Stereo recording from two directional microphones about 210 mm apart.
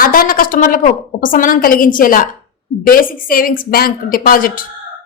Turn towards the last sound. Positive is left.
turn(degrees=40)  # may be behind; listen again after turning